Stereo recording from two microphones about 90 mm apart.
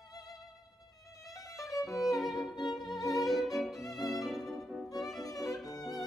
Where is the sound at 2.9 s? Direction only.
45° left (ahead or behind).